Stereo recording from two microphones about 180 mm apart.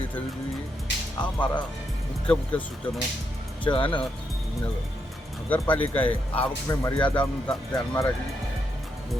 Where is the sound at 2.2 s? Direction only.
5° left (ahead or behind).